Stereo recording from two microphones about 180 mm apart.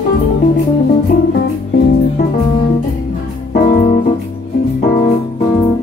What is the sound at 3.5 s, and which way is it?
Music, 55° left (ahead or behind).